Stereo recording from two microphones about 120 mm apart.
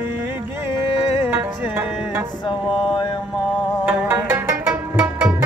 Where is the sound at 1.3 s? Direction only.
20° right (ahead or behind).